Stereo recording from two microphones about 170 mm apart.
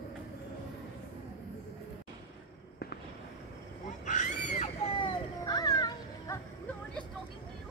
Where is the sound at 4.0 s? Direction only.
45° left (ahead or behind).